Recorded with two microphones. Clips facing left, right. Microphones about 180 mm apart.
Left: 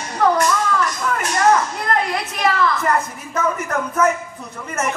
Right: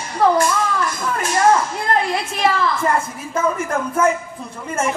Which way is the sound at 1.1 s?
25° right (ahead or behind).